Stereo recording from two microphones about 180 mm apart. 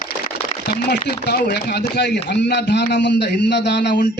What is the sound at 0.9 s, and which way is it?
A man's voice, 65° left (ahead or behind).